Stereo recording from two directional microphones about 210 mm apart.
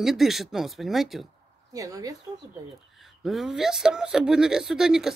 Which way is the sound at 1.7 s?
15° right (ahead or behind).